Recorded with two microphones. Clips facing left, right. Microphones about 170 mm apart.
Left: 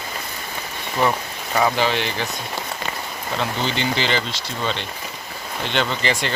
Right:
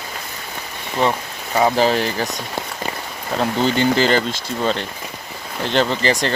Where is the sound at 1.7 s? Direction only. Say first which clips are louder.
Right 4 dB; 40° right (ahead or behind).